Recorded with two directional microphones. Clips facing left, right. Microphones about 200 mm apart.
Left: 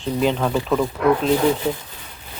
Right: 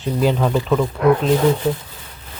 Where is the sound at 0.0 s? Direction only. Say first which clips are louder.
Right 2 dB; 5° right (ahead or behind).